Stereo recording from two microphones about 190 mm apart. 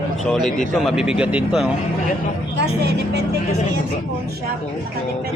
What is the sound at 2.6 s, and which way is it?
Speech, 60° right (ahead or behind).